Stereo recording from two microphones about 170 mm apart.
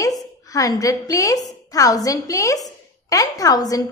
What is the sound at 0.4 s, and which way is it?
A woman's voice, 20° left (ahead or behind).